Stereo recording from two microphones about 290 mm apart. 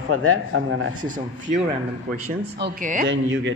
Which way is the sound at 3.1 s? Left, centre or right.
Right.